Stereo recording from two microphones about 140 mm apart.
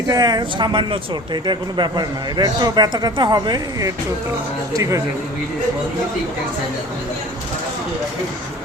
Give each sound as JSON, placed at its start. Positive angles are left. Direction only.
{"t": 0.1, "sound": "a man's voice", "side_deg": -30}